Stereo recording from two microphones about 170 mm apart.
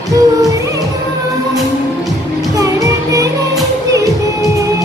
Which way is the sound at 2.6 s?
20° right (ahead or behind).